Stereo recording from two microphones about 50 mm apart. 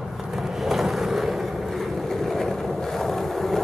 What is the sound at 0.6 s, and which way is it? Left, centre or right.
Vehicle, centre.